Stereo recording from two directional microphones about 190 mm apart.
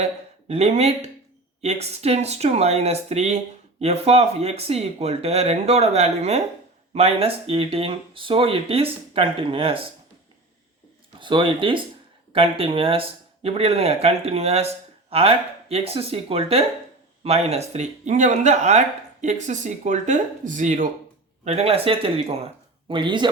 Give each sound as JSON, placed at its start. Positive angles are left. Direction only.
{"t": 0.0, "sound": "speech", "side_deg": -35}
{"t": 11.2, "sound": "speech", "side_deg": -25}